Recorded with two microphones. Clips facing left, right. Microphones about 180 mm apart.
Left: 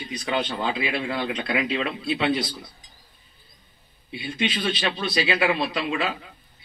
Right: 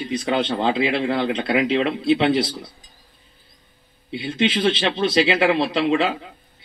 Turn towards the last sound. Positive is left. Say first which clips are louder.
# right 7 dB
turn(degrees=-25)  # may be behind; listen again after turning